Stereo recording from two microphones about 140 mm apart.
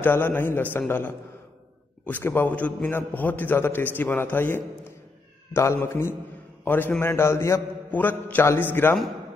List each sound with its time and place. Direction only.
0.0 s a man's voice: 15° left (ahead or behind)